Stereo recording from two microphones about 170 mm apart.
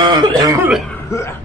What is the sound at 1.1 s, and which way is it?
Music, 15° left (ahead or behind).